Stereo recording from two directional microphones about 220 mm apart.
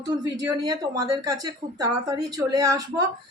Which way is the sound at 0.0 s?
15° right (ahead or behind).